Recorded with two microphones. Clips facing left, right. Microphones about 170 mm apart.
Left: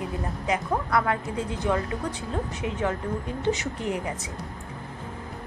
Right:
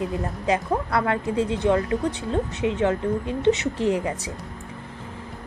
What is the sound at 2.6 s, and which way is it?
Speech, 25° right (ahead or behind).